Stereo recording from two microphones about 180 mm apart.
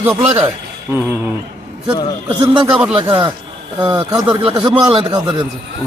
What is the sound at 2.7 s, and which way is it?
A man's voice, 5° right (ahead or behind).